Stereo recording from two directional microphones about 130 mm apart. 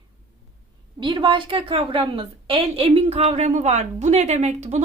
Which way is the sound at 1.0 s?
40° right (ahead or behind).